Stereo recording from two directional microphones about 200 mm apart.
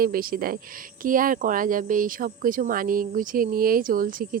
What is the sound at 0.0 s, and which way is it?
Speech, 45° right (ahead or behind).